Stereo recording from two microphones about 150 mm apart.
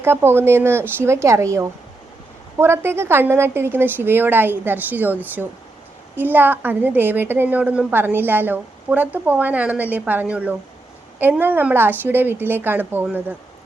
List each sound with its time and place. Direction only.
0.0 s a woman's voice: 15° right (ahead or behind)